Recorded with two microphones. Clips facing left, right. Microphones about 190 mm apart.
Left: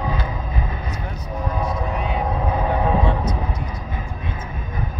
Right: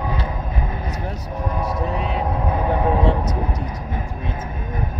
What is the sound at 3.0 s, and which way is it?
Vehicle, 40° right (ahead or behind).